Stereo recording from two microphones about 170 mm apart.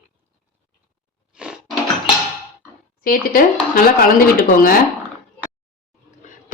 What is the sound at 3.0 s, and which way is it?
Speech, 55° left (ahead or behind).